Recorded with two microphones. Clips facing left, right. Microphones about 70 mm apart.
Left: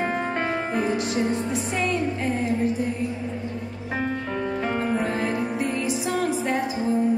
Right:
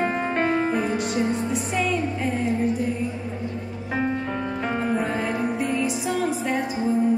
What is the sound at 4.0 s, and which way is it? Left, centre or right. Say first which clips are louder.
Music: right 3 dB; centre.